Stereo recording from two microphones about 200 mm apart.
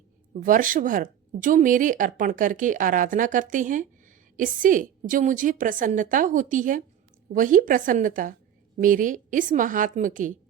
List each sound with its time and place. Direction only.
0.3 s a woman's voice: 40° right (ahead or behind)